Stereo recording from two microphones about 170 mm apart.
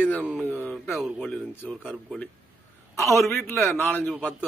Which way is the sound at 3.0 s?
15° left (ahead or behind).